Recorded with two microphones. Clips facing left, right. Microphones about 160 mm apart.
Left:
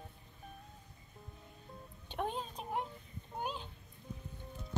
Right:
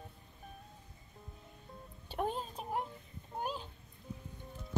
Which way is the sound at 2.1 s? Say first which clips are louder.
Right 2 dB; 5° right (ahead or behind).